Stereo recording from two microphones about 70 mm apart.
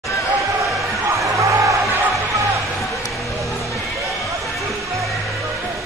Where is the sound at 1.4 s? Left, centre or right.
Right.